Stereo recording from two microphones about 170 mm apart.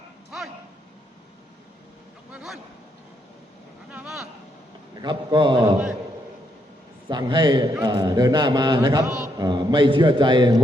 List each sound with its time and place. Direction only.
0.3 s a sound: centre (ahead or behind)
2.3 s speech: 5° right (ahead or behind)
3.9 s vehicle: 5° right (ahead or behind)
4.9 s a man's voice: 25° right (ahead or behind)
7.1 s a man's voice: 25° right (ahead or behind)
9.0 s a man's voice: 5° right (ahead or behind)
9.4 s a man's voice: 25° right (ahead or behind)